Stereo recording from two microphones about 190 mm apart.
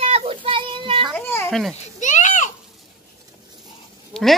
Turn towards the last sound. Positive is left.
turn(degrees=0)  # may be behind; listen again after turning